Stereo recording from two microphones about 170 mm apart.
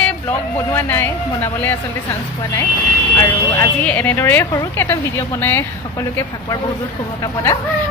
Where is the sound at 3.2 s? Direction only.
15° left (ahead or behind).